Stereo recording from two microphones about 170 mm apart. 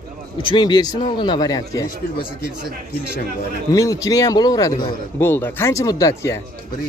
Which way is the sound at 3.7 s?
20° left (ahead or behind).